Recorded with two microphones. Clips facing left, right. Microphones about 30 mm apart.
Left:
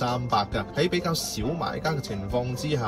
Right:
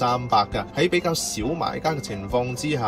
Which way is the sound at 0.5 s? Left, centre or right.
Right.